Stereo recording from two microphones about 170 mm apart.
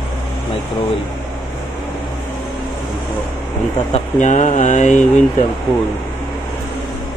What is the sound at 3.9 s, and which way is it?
Speech, 45° left (ahead or behind).